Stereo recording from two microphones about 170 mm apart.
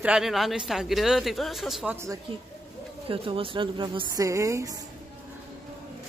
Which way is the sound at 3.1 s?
30° right (ahead or behind).